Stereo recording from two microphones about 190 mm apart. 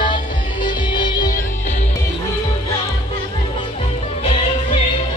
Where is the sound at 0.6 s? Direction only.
25° left (ahead or behind).